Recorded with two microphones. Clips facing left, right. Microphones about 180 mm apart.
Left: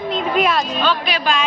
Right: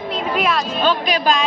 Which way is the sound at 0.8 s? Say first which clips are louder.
Right 6 dB; 40° right (ahead or behind).